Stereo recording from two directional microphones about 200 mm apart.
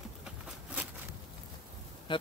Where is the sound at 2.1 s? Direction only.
25° left (ahead or behind).